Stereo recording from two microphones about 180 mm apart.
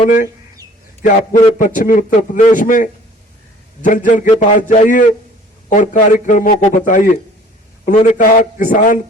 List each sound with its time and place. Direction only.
0.0 s a man's voice: 45° left (ahead or behind)
1.5 s a man's voice: 50° left (ahead or behind)